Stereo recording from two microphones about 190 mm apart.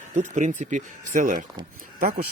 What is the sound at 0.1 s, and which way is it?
Speech, 40° right (ahead or behind).